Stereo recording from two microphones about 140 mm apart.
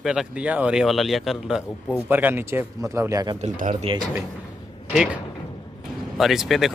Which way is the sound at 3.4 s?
50° right (ahead or behind).